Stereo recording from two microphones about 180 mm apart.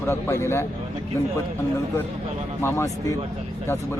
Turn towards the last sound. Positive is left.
turn(degrees=15)  # may be behind; listen again after turning